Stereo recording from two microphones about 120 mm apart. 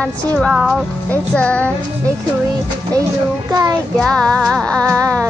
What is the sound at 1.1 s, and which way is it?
Speech, 10° left (ahead or behind).